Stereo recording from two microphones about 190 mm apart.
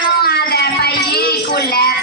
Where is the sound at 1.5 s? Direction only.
55° left (ahead or behind).